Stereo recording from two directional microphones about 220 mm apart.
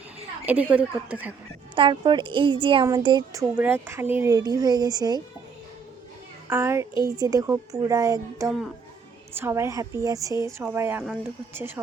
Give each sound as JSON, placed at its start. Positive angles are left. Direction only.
{"t": 0.4, "sound": "speech", "side_deg": -5}
{"t": 1.7, "sound": "speech", "side_deg": -20}
{"t": 6.5, "sound": "speech", "side_deg": -10}